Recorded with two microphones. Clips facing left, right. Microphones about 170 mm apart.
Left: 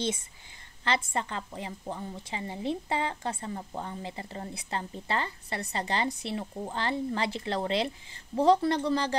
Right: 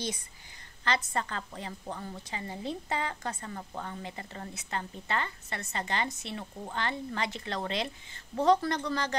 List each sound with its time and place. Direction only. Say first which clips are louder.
0.8 s a woman's voice: left 1 dB; 25° left (ahead or behind)